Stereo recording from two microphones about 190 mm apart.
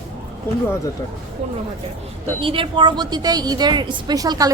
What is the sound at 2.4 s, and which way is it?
A woman's voice, 25° right (ahead or behind).